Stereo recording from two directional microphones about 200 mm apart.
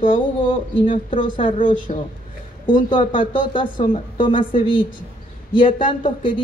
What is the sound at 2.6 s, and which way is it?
Speech, 25° left (ahead or behind).